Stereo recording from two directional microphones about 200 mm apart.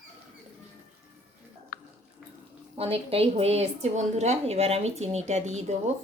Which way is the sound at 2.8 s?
30° right (ahead or behind).